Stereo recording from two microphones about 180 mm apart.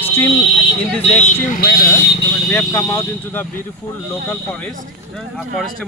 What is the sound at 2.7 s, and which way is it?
Speech, 20° left (ahead or behind).